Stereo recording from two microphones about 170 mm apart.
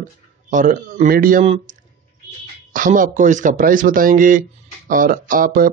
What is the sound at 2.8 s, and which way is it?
A man's voice, 50° right (ahead or behind).